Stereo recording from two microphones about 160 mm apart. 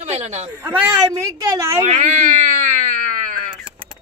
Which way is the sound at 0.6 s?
10° right (ahead or behind).